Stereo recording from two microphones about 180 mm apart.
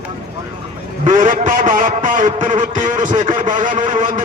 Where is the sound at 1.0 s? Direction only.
45° right (ahead or behind).